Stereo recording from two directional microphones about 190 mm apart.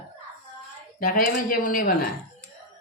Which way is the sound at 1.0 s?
45° left (ahead or behind).